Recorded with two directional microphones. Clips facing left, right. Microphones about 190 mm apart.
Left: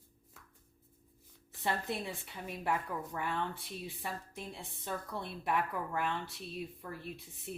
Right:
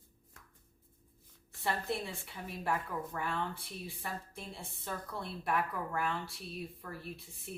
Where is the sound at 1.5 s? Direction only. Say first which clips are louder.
Even; 20° left (ahead or behind).